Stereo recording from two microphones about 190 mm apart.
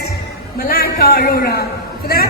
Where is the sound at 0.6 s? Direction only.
50° left (ahead or behind).